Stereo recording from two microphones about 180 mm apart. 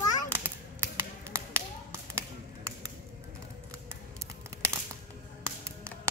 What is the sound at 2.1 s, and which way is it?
Tap, 15° right (ahead or behind).